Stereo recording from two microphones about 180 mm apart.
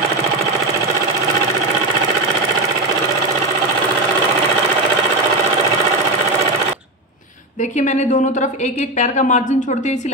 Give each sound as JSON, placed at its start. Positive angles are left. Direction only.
{"t": 7.8, "sound": "a woman's voice", "side_deg": 40}